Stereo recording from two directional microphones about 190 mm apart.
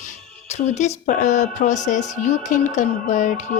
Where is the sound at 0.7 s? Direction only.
40° left (ahead or behind).